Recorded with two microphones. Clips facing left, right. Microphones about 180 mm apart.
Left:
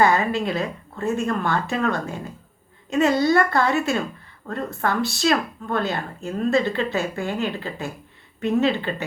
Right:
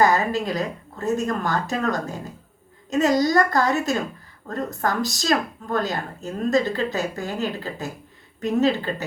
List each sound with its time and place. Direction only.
0.0 s speech: 40° right (ahead or behind)